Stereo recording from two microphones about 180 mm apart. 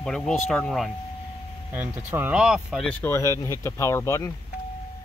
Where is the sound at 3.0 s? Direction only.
15° left (ahead or behind).